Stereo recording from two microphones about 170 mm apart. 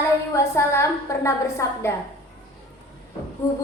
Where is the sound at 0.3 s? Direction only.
15° left (ahead or behind).